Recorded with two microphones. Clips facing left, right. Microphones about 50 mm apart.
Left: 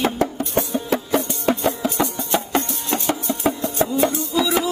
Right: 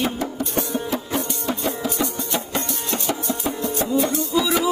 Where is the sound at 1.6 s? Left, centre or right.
Left.